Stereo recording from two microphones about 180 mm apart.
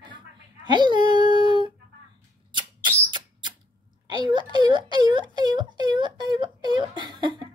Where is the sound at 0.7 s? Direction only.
25° right (ahead or behind).